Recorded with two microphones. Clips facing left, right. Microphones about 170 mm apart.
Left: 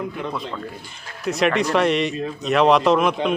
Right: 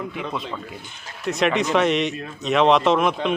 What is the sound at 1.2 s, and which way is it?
Speech, centre (ahead or behind).